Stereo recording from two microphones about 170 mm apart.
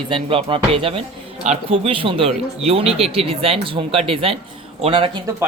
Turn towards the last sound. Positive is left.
turn(degrees=-30)  # may be behind; listen again after turning